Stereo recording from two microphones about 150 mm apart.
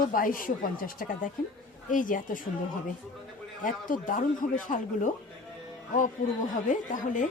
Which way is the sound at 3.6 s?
60° left (ahead or behind).